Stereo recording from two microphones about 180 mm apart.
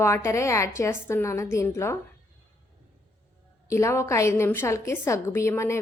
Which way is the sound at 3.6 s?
15° left (ahead or behind).